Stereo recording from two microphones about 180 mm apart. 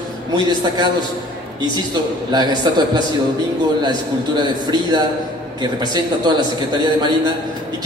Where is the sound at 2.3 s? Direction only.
25° right (ahead or behind).